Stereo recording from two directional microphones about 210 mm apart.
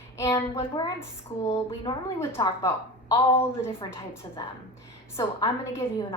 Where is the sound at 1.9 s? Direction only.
15° left (ahead or behind).